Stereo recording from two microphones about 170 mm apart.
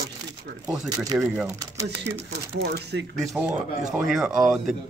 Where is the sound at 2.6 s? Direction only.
70° right (ahead or behind).